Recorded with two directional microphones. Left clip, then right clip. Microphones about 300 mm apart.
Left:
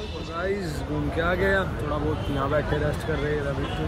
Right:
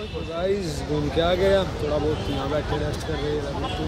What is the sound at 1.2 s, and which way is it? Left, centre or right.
Speech, centre.